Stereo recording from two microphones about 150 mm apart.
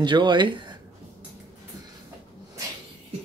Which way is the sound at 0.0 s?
30° right (ahead or behind).